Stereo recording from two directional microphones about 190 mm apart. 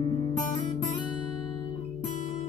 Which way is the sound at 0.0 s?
30° left (ahead or behind).